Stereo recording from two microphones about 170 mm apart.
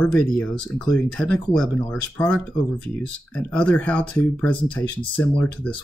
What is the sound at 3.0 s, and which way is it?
Speech, 5° left (ahead or behind).